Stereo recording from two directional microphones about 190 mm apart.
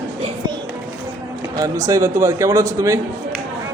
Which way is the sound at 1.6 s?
20° right (ahead or behind).